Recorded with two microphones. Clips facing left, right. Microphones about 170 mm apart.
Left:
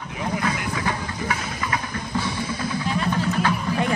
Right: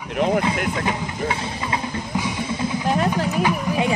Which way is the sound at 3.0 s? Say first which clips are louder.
Right 2 dB; 15° right (ahead or behind).